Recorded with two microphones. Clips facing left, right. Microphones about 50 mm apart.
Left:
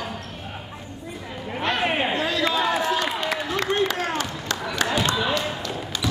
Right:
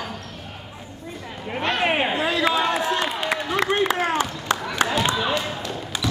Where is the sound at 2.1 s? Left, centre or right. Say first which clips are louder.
Right 2 dB; centre.